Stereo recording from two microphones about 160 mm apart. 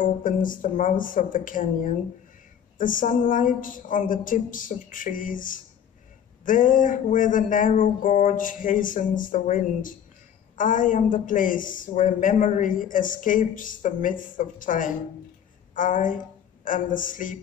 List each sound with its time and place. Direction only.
0.0 s a woman's voice: 55° left (ahead or behind)